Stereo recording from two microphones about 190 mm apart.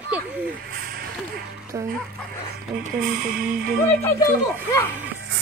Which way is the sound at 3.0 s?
45° right (ahead or behind).